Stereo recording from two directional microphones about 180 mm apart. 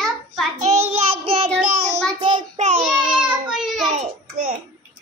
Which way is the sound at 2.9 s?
5° right (ahead or behind).